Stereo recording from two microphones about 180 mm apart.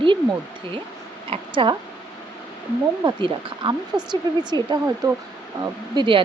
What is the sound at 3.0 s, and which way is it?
Speech, 25° right (ahead or behind).